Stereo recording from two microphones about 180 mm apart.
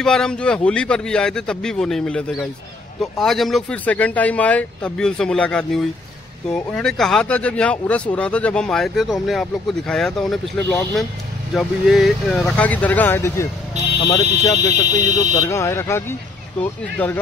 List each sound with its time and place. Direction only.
0.0 s speech: 5° left (ahead or behind)
10.6 s speech: 10° left (ahead or behind)
11.5 s speech: centre (ahead or behind)